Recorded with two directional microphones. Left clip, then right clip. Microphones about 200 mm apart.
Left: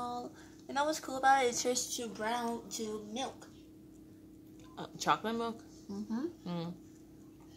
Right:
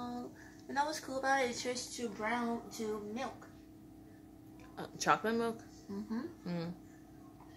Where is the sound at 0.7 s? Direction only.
25° left (ahead or behind).